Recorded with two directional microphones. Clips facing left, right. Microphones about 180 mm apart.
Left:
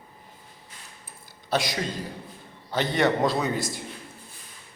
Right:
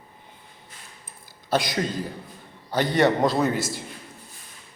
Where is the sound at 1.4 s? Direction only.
Centre (ahead or behind).